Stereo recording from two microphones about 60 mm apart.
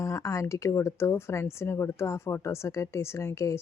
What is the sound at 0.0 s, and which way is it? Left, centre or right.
Speech, left.